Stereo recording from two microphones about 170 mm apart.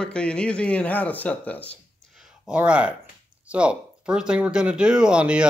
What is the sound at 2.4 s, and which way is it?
Speech, 5° right (ahead or behind).